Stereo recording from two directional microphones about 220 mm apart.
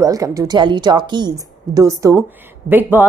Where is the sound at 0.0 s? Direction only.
15° right (ahead or behind).